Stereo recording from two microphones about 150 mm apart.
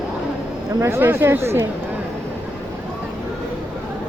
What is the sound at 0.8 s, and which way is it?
Speech, 15° right (ahead or behind).